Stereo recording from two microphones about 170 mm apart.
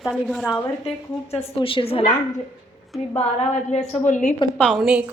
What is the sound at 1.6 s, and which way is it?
Speech, 30° left (ahead or behind).